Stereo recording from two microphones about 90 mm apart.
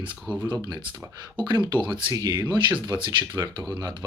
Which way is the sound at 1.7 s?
60° right (ahead or behind).